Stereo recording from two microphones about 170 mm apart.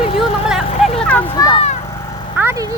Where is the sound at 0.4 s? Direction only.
Centre (ahead or behind).